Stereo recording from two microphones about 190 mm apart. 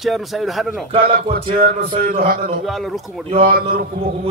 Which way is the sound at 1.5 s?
50° right (ahead or behind).